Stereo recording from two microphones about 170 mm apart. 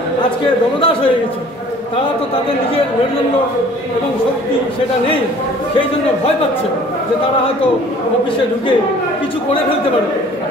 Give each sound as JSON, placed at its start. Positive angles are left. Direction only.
{"t": 0.7, "sound": "a man's voice", "side_deg": 30}